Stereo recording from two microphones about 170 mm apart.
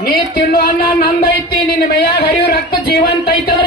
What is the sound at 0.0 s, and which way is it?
Speech, 60° left (ahead or behind).